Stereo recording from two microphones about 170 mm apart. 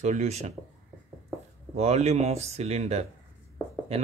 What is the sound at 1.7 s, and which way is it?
Speech, 40° right (ahead or behind).